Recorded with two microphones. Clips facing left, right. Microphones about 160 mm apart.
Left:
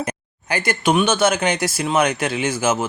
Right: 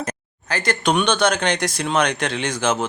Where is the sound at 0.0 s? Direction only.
10° left (ahead or behind).